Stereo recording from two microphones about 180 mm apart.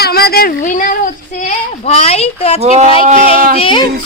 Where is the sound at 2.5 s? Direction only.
35° right (ahead or behind).